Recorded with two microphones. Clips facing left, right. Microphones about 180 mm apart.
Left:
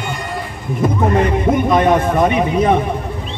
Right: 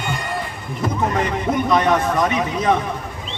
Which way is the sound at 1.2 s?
50° left (ahead or behind).